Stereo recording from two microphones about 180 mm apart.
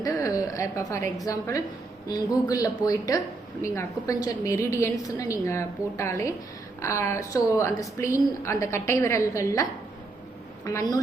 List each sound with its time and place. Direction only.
0.0 s a woman's voice: 20° left (ahead or behind)
10.7 s a woman's voice: 20° left (ahead or behind)